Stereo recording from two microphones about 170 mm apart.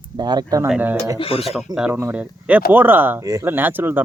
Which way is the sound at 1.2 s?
35° left (ahead or behind).